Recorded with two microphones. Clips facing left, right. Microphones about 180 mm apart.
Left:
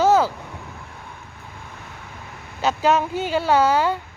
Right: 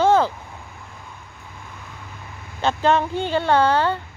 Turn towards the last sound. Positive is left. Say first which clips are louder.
# even
turn(degrees=10)  # may be behind; listen again after turning